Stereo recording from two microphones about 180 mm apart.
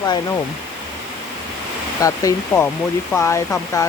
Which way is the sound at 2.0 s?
20° left (ahead or behind).